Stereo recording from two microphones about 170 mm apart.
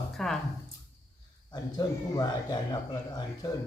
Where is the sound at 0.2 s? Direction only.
Centre (ahead or behind).